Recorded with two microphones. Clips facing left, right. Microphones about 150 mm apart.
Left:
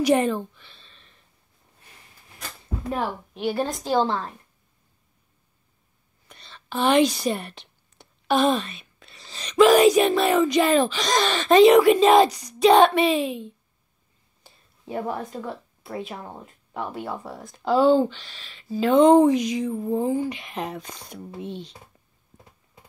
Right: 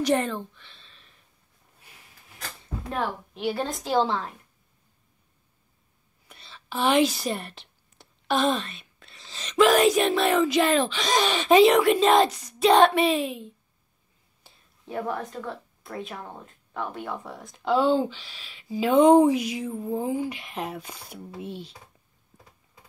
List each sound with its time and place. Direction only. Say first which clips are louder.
0.0 s a sound: left 4 dB; 10° left (ahead or behind); by 1.2 s 5° right (ahead or behind)
2.9 s a woman's voice: left 2 dB; 10° left (ahead or behind)
6.2 s speech: left 1 dB; 5° right (ahead or behind)
11.7 s speech: left 4 dB; centre (ahead or behind)
14.4 s a sound: left 3 dB; centre (ahead or behind)
15.0 s a woman's voice: left 1 dB; 20° left (ahead or behind)
15.4 s speech: left 2 dB; 5° left (ahead or behind)